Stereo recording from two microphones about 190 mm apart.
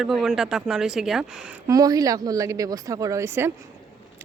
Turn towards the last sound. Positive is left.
turn(degrees=-15)  # may be behind; listen again after turning